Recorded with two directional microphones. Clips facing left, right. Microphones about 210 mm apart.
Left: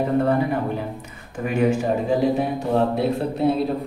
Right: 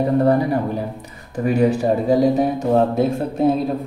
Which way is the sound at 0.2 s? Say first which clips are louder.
Right 4 dB; 35° right (ahead or behind).